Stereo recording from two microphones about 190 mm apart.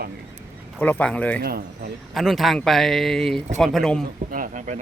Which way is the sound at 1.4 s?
55° right (ahead or behind).